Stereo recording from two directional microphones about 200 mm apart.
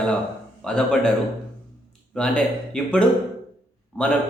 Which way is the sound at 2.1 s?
5° left (ahead or behind).